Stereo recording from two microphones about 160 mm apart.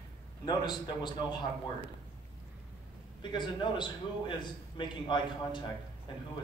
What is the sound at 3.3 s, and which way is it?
A man's voice, 30° left (ahead or behind).